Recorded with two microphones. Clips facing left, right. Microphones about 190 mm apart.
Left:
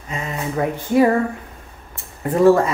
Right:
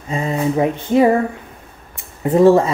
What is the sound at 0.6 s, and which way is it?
Speech, 20° right (ahead or behind).